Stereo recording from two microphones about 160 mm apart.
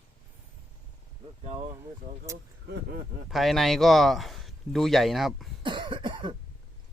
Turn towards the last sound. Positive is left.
turn(degrees=-30)  # may be behind; listen again after turning